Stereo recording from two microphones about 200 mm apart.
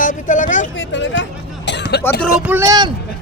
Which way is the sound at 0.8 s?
70° left (ahead or behind).